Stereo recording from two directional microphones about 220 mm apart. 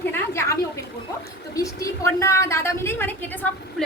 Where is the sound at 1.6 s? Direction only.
15° left (ahead or behind).